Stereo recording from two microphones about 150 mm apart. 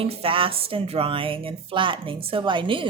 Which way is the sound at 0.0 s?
40° right (ahead or behind).